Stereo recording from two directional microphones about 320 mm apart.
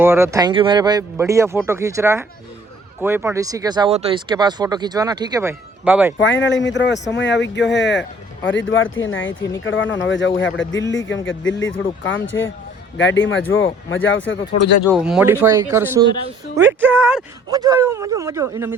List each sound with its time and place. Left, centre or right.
0.0 s speech: centre
6.1 s speech: left
14.8 s speech: centre